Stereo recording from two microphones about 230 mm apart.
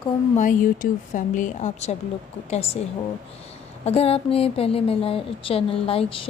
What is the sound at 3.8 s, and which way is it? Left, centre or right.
Speech, left.